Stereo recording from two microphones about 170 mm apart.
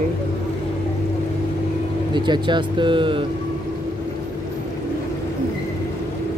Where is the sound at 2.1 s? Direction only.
25° right (ahead or behind).